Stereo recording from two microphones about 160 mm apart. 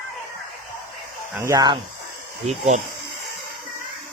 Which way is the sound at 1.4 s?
20° right (ahead or behind).